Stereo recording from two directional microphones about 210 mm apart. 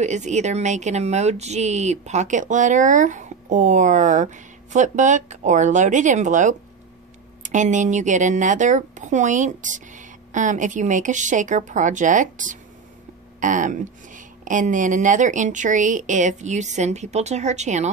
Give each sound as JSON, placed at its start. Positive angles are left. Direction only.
{"t": 0.0, "sound": "speech", "side_deg": -35}